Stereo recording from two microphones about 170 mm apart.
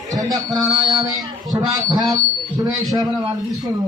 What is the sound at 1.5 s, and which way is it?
Speech, 25° right (ahead or behind).